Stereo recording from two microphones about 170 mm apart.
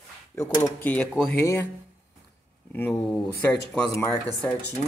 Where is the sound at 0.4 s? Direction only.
15° left (ahead or behind).